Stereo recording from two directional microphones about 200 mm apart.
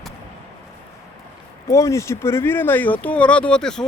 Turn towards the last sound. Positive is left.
turn(degrees=5)  # may be behind; listen again after turning